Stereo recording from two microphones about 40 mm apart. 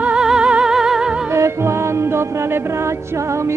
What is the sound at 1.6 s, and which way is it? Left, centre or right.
Music, right.